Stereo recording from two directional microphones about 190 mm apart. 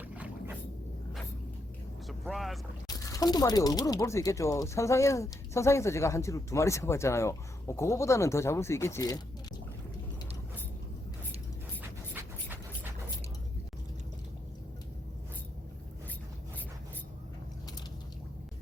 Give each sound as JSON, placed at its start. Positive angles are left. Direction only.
{"t": 0.0, "sound": "a sound", "side_deg": -10}
{"t": 2.0, "sound": "vehicle", "side_deg": 0}
{"t": 2.8, "sound": "speech", "side_deg": 20}